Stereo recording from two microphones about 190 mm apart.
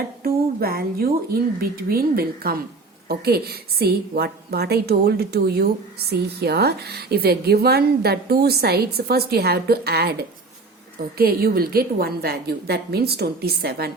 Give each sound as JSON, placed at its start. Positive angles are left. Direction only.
{"t": 0.2, "sound": "a woman's voice", "side_deg": -55}
{"t": 11.2, "sound": "a woman's voice", "side_deg": -50}